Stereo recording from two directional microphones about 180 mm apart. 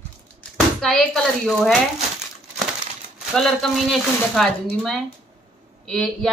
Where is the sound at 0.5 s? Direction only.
Centre (ahead or behind).